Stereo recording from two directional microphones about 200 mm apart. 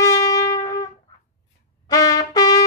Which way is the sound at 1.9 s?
20° left (ahead or behind).